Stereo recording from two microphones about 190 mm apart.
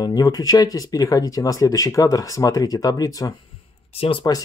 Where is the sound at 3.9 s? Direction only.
30° left (ahead or behind).